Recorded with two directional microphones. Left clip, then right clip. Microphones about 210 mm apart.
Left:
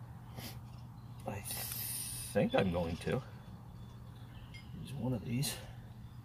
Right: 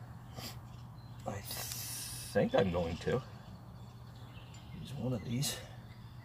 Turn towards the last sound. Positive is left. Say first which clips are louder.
# right 1 dB
turn(degrees=-15)  # may be behind; listen again after turning